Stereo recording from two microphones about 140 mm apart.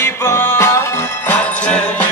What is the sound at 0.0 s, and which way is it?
Music, 20° left (ahead or behind).